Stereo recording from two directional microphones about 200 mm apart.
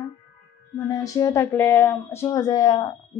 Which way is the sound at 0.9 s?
15° left (ahead or behind).